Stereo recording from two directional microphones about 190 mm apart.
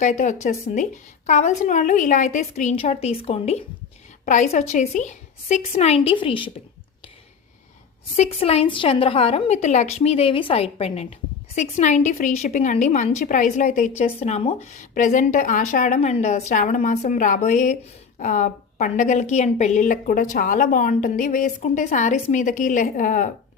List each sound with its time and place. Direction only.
0.0 s a woman's voice: 40° left (ahead or behind)
8.1 s a woman's voice: 35° left (ahead or behind)